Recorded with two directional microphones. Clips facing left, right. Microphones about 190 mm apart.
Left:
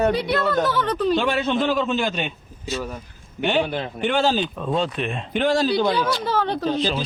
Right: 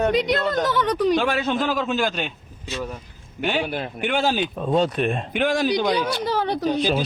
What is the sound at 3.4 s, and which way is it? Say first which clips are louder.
Speech: left 2 dB; 5° right (ahead or behind).